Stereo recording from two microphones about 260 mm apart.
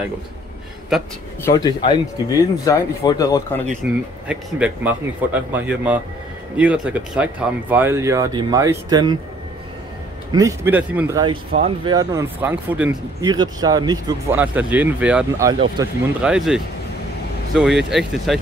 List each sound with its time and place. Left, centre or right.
1.4 s speech: centre
3.8 s speech: right
4.3 s speech: centre
10.3 s speech: centre